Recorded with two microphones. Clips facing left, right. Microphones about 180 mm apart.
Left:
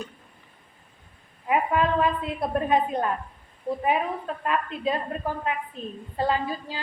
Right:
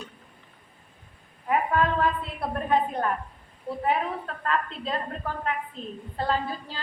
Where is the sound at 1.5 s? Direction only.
15° left (ahead or behind).